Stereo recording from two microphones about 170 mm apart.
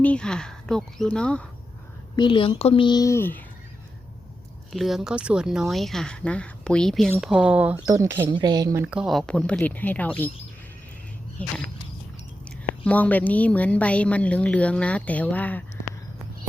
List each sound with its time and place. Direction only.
0.0 s speech: 5° left (ahead or behind)
2.1 s a woman's voice: 30° left (ahead or behind); by 3.4 s 15° left (ahead or behind)
4.7 s speech: centre (ahead or behind)
7.9 s speech: 20° right (ahead or behind); by 10.3 s 10° left (ahead or behind)
11.4 s a woman's voice: 10° left (ahead or behind)